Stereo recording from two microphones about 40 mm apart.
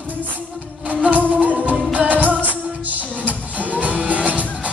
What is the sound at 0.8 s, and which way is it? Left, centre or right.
Music, right.